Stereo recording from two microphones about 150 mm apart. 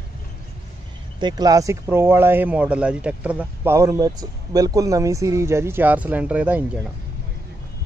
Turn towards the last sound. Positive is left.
turn(degrees=-10)  # may be behind; listen again after turning